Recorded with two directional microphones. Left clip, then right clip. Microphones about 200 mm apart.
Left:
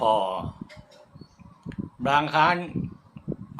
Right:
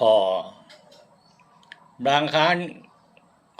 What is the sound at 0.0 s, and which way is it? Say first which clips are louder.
Speech: right 5 dB; 10° right (ahead or behind).